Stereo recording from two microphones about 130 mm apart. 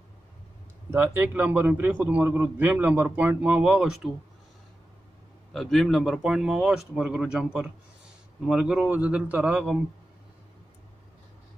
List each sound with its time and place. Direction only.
0.9 s a man's voice: 15° right (ahead or behind)
5.5 s a man's voice: centre (ahead or behind)